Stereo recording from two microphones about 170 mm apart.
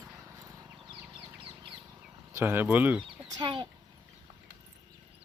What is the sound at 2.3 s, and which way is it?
Speech, 15° right (ahead or behind).